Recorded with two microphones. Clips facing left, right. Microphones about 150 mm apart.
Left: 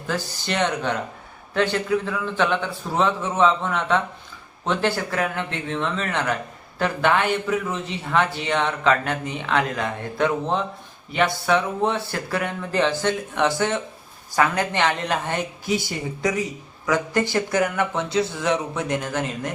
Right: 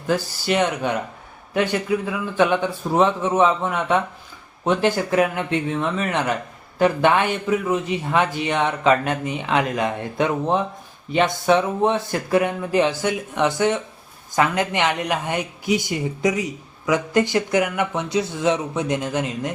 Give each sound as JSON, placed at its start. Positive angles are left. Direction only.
{"t": 0.1, "sound": "speech", "side_deg": -10}